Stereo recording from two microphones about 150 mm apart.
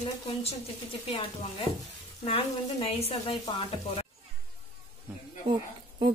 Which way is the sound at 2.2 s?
40° left (ahead or behind).